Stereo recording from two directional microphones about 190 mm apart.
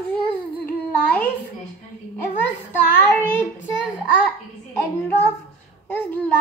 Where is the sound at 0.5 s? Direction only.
10° left (ahead or behind).